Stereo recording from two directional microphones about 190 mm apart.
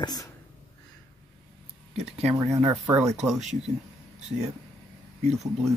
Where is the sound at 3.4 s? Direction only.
35° right (ahead or behind).